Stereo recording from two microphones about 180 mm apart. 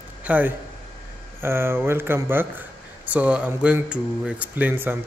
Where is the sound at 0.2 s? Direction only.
10° right (ahead or behind).